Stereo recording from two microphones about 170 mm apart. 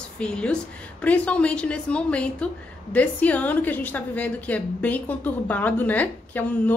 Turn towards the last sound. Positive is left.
turn(degrees=10)  # may be behind; listen again after turning